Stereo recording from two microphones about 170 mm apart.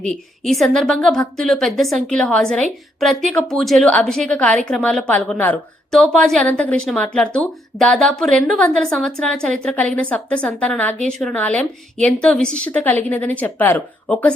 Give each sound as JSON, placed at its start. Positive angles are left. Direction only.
{"t": 0.0, "sound": "a woman's voice", "side_deg": 5}